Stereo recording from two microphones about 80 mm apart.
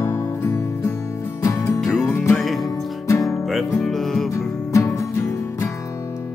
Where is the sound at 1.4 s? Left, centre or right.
Left.